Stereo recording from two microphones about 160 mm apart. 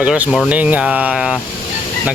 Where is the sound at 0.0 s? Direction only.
5° right (ahead or behind).